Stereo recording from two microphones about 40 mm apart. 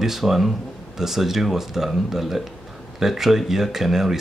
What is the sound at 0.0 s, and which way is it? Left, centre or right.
Speech, centre.